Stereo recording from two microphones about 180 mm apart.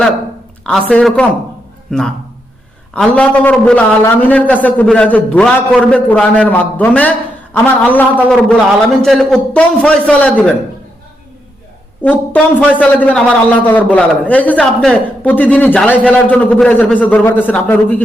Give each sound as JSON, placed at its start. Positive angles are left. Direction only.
{"t": 0.6, "sound": "a man's voice", "side_deg": 5}
{"t": 12.0, "sound": "a man's voice", "side_deg": 10}